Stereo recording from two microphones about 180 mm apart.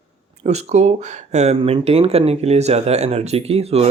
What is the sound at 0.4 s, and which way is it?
Speech, 40° right (ahead or behind).